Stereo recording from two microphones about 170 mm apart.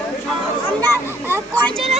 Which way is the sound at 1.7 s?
35° right (ahead or behind).